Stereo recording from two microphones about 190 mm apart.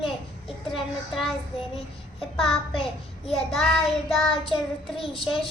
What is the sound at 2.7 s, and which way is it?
Child singing, 30° left (ahead or behind).